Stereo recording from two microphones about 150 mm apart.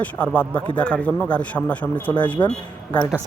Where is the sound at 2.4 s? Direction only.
25° left (ahead or behind).